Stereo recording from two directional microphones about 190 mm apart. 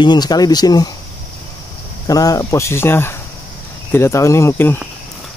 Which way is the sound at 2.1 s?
20° left (ahead or behind).